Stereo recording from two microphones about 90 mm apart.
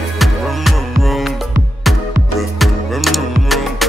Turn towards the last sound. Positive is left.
turn(degrees=0)  # may be behind; listen again after turning